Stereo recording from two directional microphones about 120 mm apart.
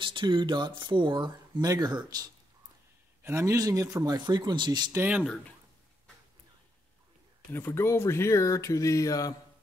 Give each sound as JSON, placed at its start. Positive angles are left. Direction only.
{"t": 0.0, "sound": "speech", "side_deg": -45}
{"t": 3.2, "sound": "speech", "side_deg": -20}
{"t": 4.9, "sound": "speech", "side_deg": -15}
{"t": 7.5, "sound": "speech", "side_deg": 20}